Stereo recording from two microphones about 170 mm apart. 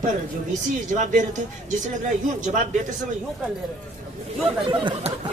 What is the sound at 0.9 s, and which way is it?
A woman's voice, 45° right (ahead or behind).